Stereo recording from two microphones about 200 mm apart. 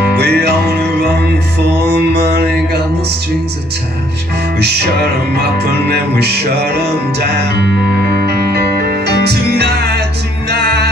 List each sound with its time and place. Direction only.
0.2 s music: 55° right (ahead or behind)
4.6 s music: 55° right (ahead or behind)